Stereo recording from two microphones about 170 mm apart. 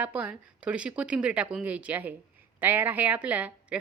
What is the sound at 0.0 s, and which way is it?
Speech, 10° right (ahead or behind).